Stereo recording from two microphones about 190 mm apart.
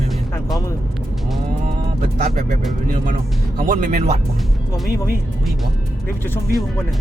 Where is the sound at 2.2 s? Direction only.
40° right (ahead or behind).